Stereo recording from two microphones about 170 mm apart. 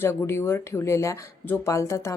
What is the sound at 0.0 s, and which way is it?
Speech, 15° left (ahead or behind).